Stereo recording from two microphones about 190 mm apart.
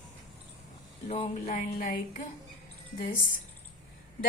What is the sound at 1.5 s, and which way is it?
Music, 40° left (ahead or behind).